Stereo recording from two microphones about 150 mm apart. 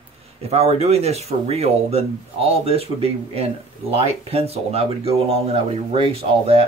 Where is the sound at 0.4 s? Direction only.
45° right (ahead or behind).